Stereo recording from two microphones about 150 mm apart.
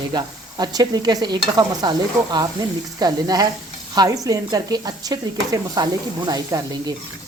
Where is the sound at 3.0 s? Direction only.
25° right (ahead or behind).